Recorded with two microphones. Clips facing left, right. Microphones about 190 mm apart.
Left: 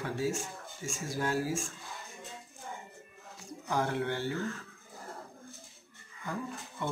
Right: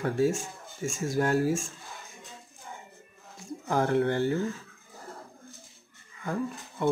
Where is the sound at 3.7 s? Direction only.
50° right (ahead or behind).